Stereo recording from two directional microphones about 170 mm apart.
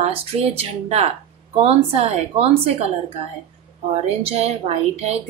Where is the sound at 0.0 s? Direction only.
35° right (ahead or behind).